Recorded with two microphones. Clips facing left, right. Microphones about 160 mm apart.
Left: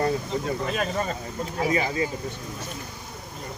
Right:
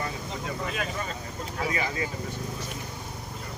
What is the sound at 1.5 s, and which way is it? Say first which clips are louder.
Speech: left 5 dB; 30° left (ahead or behind).